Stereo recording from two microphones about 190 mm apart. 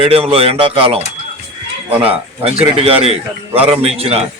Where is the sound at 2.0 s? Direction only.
30° right (ahead or behind).